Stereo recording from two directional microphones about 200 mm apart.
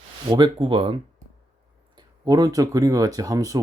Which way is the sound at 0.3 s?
25° right (ahead or behind).